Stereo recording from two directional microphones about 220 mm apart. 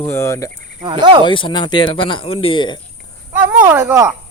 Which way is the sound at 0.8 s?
20° right (ahead or behind).